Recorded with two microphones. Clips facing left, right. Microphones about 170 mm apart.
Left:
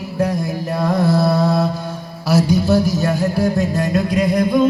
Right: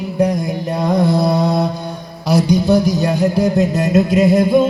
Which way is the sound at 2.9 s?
15° right (ahead or behind).